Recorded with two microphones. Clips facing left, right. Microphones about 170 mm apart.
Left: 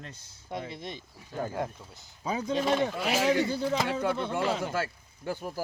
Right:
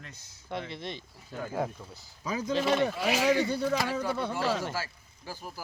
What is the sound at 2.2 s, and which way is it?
Speech, 30° left (ahead or behind).